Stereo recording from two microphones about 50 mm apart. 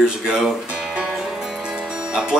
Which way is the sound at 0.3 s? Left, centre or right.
Centre.